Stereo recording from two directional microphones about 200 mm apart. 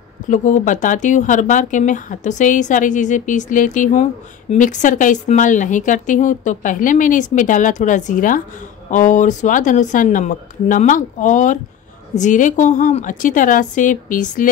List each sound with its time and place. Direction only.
0.3 s speech: 40° left (ahead or behind)